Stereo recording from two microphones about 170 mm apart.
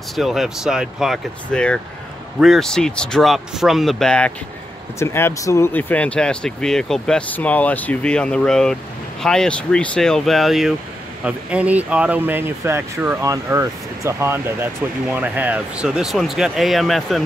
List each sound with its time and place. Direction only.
0.1 s speech: centre (ahead or behind)
4.9 s speech: 15° left (ahead or behind)